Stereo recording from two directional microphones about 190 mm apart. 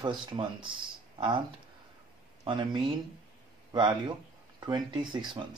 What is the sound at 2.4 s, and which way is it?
Speech, 25° right (ahead or behind).